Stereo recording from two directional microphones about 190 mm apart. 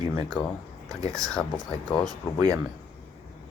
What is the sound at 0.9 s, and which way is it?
Speech, 20° right (ahead or behind).